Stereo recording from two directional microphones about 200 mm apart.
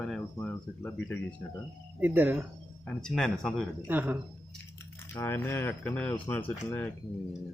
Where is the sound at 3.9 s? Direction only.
10° right (ahead or behind).